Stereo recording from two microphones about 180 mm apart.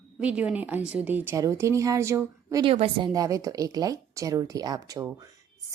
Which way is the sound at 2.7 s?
30° right (ahead or behind).